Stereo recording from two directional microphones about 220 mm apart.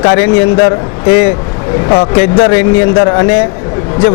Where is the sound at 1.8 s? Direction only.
25° left (ahead or behind).